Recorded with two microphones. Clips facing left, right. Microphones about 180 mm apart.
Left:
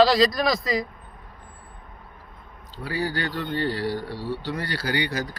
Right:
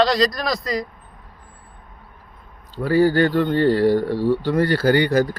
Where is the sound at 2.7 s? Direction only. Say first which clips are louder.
Right 12 dB; 50° right (ahead or behind).